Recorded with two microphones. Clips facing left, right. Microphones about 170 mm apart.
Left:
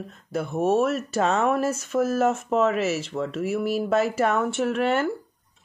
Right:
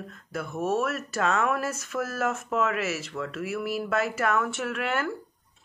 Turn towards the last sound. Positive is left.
turn(degrees=25)  # may be behind; listen again after turning